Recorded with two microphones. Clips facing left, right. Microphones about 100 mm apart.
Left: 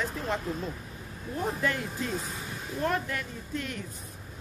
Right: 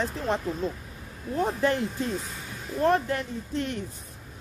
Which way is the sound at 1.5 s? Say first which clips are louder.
Right 4 dB; 30° right (ahead or behind).